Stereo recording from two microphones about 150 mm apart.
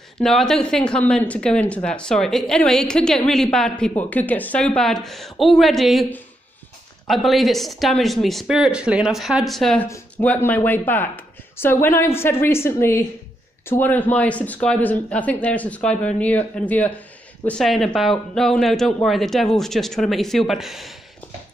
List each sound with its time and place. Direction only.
0.2 s speech: 5° left (ahead or behind)
7.1 s speech: centre (ahead or behind)